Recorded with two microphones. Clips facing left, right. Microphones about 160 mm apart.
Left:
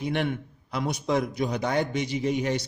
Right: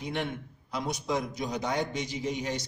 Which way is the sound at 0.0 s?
65° left (ahead or behind).